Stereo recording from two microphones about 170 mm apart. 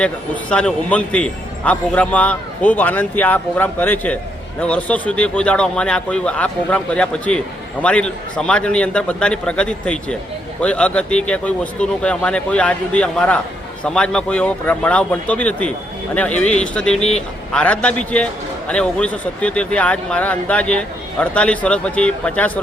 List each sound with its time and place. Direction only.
0.5 s speech: 5° left (ahead or behind)
17.0 s speech: 40° left (ahead or behind)
17.6 s speech: 5° left (ahead or behind)